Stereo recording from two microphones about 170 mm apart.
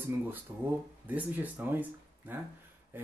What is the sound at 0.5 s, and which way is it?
Speech, 20° right (ahead or behind).